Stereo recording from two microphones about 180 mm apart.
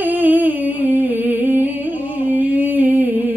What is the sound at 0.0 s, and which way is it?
Humming, 10° right (ahead or behind).